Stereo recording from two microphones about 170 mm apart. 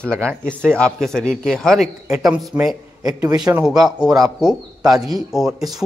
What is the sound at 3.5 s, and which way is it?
A man's voice, 5° right (ahead or behind).